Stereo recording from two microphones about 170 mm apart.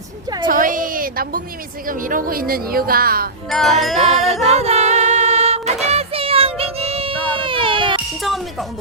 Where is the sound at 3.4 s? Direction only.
Centre (ahead or behind).